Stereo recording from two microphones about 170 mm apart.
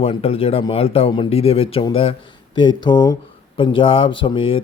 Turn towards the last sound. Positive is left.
turn(degrees=30)  # may be behind; listen again after turning